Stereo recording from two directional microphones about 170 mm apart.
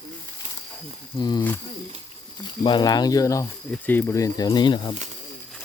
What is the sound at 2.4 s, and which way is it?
Speech, 25° left (ahead or behind).